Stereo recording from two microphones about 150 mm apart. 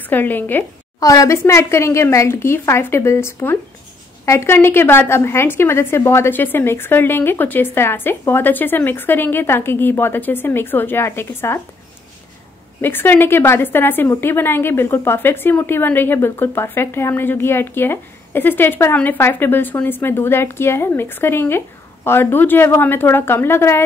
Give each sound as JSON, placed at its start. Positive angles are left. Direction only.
{"t": 0.1, "sound": "a woman's voice", "side_deg": 10}
{"t": 0.9, "sound": "a woman's voice", "side_deg": 25}
{"t": 12.8, "sound": "a woman's voice", "side_deg": 15}